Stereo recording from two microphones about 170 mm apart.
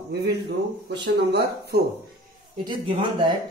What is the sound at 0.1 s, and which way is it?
Speech, 75° right (ahead or behind).